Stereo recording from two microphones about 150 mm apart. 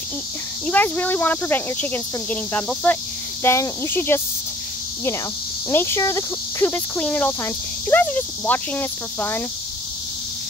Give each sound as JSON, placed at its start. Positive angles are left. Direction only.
{"t": 0.7, "sound": "speech", "side_deg": 10}
{"t": 5.7, "sound": "speech", "side_deg": 15}